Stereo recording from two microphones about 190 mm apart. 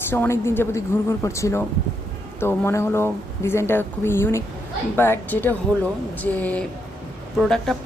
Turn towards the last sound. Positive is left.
turn(degrees=0)  # may be behind; listen again after turning